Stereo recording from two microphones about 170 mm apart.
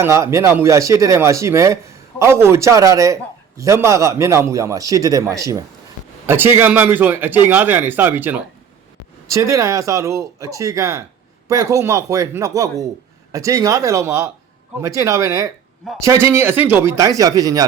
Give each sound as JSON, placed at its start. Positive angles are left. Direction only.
{"t": 0.0, "sound": "a man's voice", "side_deg": -15}